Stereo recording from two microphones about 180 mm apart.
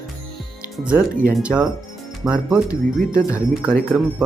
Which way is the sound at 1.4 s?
5° right (ahead or behind).